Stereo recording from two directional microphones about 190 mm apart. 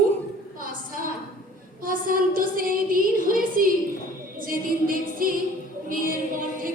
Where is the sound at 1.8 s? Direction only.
45° right (ahead or behind).